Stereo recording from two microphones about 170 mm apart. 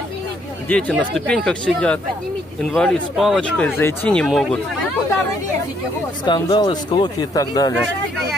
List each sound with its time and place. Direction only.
0.7 s speech: 5° left (ahead or behind)
6.2 s speech: 25° left (ahead or behind)